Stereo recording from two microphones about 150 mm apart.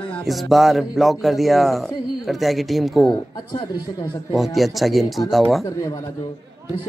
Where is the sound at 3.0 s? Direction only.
30° left (ahead or behind).